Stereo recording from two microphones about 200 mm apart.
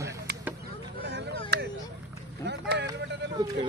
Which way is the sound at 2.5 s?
60° right (ahead or behind).